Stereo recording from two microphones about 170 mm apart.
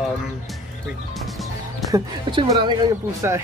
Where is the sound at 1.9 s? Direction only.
20° right (ahead or behind).